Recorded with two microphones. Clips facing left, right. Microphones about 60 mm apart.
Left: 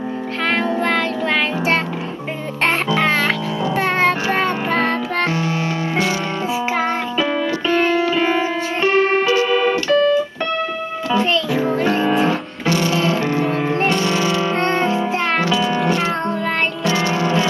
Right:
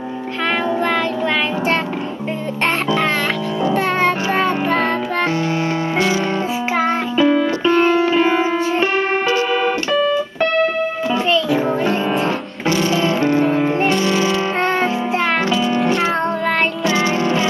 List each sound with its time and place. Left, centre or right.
0.7 s child singing: centre
3.6 s music: centre
6.8 s music: centre
7.6 s music: centre
8.8 s music: right
9.5 s keyboard: centre
11.1 s music: centre
13.0 s music: centre
13.3 s music: centre
15.5 s music: centre
16.8 s music: right